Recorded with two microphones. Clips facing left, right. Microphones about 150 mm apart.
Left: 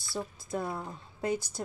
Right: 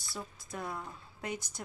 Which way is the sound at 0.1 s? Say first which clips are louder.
Left 8 dB; 30° left (ahead or behind).